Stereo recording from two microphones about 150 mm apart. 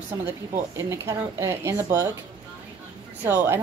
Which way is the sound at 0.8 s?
20° right (ahead or behind).